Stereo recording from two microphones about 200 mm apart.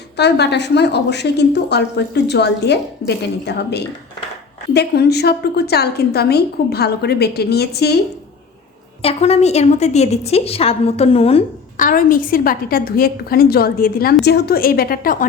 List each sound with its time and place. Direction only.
0.2 s a woman's voice: 60° left (ahead or behind)
9.0 s a woman's voice: 30° left (ahead or behind)
11.8 s a woman's voice: 45° left (ahead or behind)